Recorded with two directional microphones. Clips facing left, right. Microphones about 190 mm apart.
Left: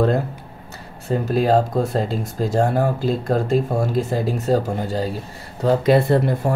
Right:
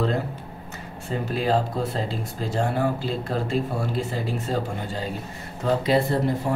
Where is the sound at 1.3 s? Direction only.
45° left (ahead or behind).